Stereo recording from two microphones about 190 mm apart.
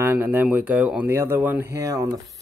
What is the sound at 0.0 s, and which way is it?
Speech, 10° right (ahead or behind).